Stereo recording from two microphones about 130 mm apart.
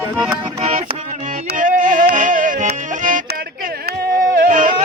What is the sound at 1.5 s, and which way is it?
Music, 90° right.